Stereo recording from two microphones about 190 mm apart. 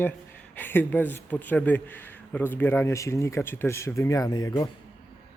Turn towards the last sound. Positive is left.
turn(degrees=20)  # may be behind; listen again after turning